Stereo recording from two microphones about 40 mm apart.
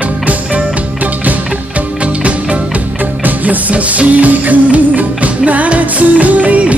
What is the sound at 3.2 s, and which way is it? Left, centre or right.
Music, right.